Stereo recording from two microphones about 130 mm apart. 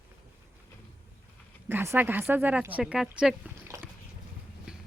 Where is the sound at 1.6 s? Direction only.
20° right (ahead or behind).